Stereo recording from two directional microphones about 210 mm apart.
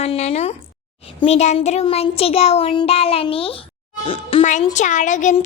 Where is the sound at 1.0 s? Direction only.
30° left (ahead or behind).